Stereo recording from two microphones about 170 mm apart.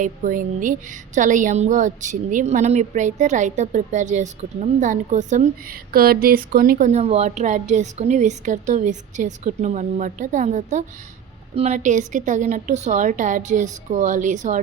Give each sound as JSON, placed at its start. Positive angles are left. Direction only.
{"t": 0.0, "sound": "a woman's voice", "side_deg": -50}
{"t": 5.9, "sound": "a woman's voice", "side_deg": -60}